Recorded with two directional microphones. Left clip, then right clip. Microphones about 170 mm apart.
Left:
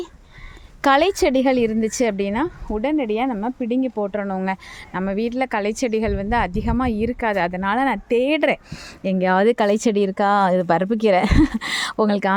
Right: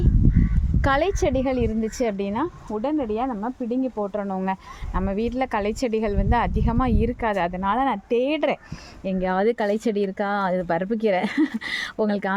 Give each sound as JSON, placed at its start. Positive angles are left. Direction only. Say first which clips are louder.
{"t": 0.8, "sound": "a woman's voice", "louder": "left 5 dB", "side_deg": 30}